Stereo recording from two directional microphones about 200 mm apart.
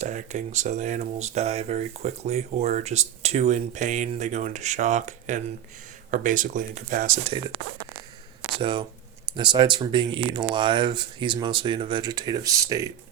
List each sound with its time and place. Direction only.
0.0 s speech: 35° right (ahead or behind)
7.3 s speech: 25° right (ahead or behind)